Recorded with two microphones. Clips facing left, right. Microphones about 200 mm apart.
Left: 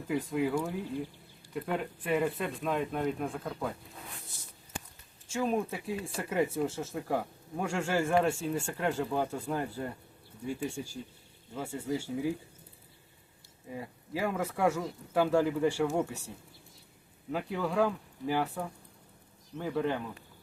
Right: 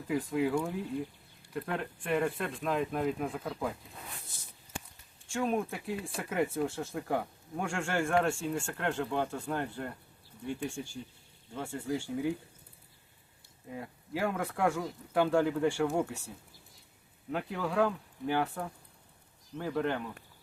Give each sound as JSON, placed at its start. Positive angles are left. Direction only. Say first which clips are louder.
{"t": 0.1, "sound": "speech", "louder": "even", "side_deg": 0}
{"t": 5.3, "sound": "speech", "louder": "left 1 dB", "side_deg": 0}
{"t": 13.7, "sound": "speech", "louder": "left 1 dB", "side_deg": 0}
{"t": 17.3, "sound": "speech", "louder": "left 1 dB", "side_deg": 0}